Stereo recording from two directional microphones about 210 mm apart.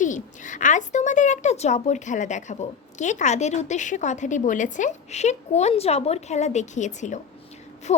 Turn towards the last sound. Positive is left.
turn(degrees=35)  # may be behind; listen again after turning